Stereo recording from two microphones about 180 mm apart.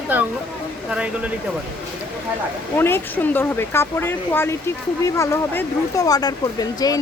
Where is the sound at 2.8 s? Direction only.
10° left (ahead or behind).